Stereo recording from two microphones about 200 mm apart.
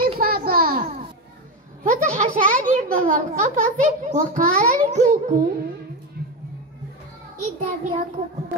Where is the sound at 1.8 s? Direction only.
40° right (ahead or behind).